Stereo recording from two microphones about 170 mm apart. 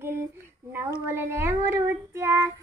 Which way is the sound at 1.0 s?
15° right (ahead or behind).